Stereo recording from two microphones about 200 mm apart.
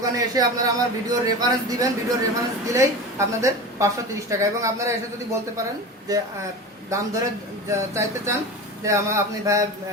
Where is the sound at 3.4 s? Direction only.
15° right (ahead or behind).